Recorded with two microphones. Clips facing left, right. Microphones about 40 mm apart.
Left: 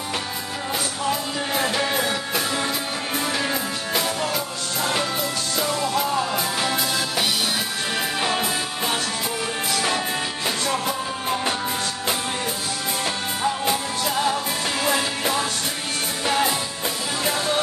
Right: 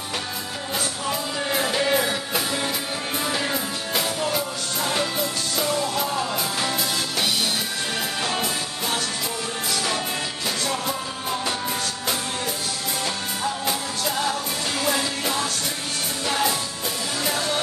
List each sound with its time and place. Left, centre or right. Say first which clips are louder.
1.5 s music: right 1 dB; centre
5.6 s music: left 1 dB; centre
8.2 s music: left 2 dB; left
13.0 s music: left 3 dB; centre